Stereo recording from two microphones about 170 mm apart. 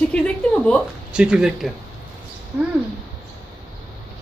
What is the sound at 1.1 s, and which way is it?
Speech, 5° right (ahead or behind).